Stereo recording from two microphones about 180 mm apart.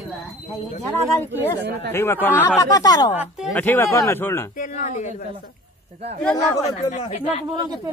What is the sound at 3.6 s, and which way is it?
Speech, 15° left (ahead or behind).